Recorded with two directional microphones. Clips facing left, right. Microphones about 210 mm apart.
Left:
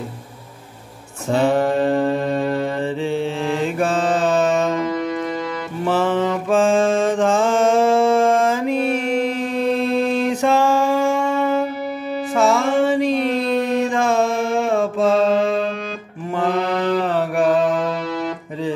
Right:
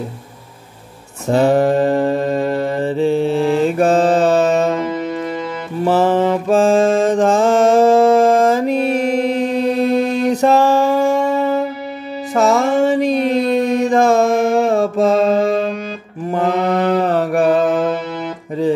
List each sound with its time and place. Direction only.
1.3 s mantra: 40° right (ahead or behind)
4.8 s music: 5° right (ahead or behind)
5.9 s mantra: 40° right (ahead or behind)
9.8 s music: 40° right (ahead or behind)
16.3 s mantra: 45° right (ahead or behind)